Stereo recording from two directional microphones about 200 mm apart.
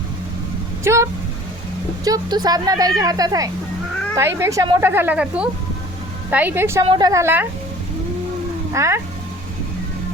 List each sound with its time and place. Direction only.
0.9 s speech: 15° right (ahead or behind)
2.0 s speech: 20° right (ahead or behind)
6.8 s speech: 20° right (ahead or behind)
8.7 s speech: 15° right (ahead or behind)